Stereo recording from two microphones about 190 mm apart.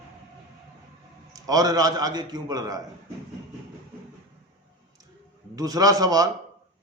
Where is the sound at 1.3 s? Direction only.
20° right (ahead or behind).